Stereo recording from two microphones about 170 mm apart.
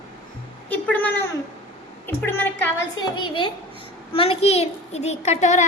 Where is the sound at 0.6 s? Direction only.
10° left (ahead or behind).